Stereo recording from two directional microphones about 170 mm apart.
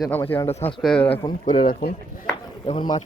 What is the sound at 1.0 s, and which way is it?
Speech, 30° left (ahead or behind).